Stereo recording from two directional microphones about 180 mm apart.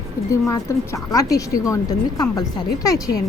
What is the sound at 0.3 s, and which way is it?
A woman's voice, 15° left (ahead or behind).